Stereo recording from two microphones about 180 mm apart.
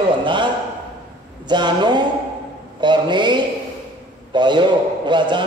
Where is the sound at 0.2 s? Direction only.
25° right (ahead or behind).